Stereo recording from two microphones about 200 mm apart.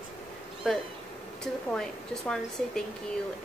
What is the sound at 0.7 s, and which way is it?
Speech, centre (ahead or behind).